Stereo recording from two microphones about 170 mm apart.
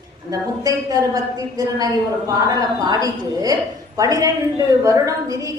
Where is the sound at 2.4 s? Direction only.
20° right (ahead or behind).